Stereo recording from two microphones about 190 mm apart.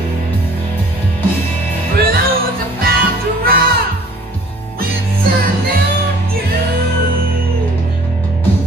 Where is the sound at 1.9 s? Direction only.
50° right (ahead or behind).